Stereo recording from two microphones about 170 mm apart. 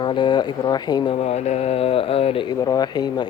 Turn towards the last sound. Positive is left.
turn(degrees=25)  # may be behind; listen again after turning